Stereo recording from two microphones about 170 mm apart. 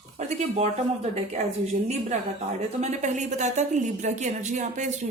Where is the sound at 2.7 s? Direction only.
45° right (ahead or behind).